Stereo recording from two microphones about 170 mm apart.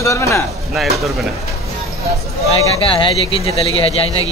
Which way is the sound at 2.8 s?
35° left (ahead or behind).